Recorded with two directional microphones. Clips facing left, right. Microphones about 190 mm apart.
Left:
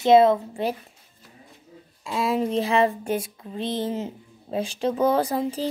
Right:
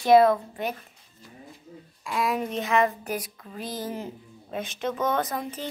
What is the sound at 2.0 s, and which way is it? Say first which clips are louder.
A woman's voice: left 3 dB; 25° left (ahead or behind).